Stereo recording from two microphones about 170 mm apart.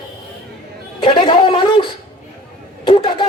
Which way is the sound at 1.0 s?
30° left (ahead or behind).